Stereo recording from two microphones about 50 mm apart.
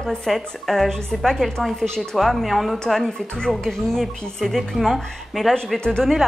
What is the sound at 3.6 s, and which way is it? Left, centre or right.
A woman's voice, centre.